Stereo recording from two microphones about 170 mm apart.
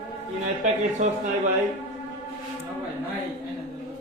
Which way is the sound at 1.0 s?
45° right (ahead or behind).